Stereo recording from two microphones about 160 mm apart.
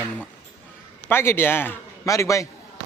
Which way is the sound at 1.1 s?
15° left (ahead or behind).